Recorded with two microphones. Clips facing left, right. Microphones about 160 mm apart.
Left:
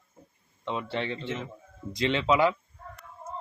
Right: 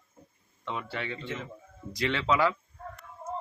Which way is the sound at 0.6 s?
25° left (ahead or behind).